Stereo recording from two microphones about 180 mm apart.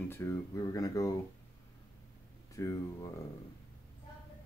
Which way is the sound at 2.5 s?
15° left (ahead or behind).